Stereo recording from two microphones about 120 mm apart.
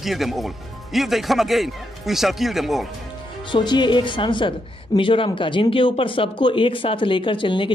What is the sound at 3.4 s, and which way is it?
A woman's voice, 40° left (ahead or behind).